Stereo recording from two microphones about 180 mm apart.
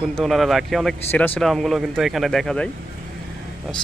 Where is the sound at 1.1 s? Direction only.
10° left (ahead or behind).